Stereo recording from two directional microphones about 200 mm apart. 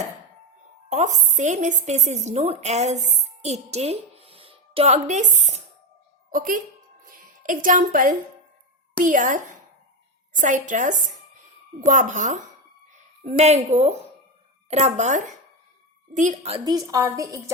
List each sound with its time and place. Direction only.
0.9 s a woman's voice: 35° right (ahead or behind)
7.0 s music: 45° right (ahead or behind)
9.0 s a woman's voice: 40° right (ahead or behind)
16.6 s a woman's voice: 20° right (ahead or behind)